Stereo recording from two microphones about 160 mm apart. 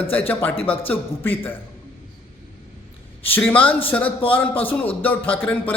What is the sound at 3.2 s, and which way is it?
A man's voice, 10° left (ahead or behind).